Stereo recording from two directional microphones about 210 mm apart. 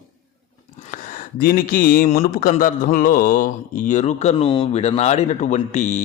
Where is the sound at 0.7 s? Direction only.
40° left (ahead or behind).